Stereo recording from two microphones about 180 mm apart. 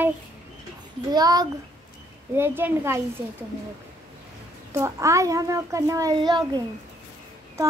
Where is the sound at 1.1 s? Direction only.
20° right (ahead or behind).